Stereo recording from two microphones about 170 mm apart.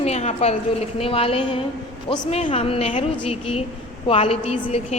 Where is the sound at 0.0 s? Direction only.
40° left (ahead or behind).